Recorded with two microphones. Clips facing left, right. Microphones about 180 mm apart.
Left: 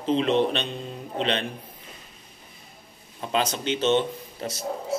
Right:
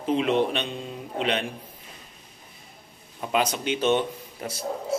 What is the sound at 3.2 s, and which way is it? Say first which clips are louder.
Speech: right 1 dB; 10° right (ahead or behind).